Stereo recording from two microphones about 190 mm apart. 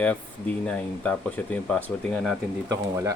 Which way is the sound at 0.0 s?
5° left (ahead or behind).